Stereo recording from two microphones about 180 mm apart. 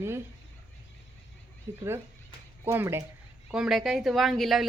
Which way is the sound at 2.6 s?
10° right (ahead or behind).